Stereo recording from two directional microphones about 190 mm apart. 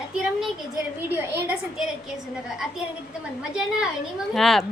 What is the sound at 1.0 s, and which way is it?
Speech, 10° right (ahead or behind).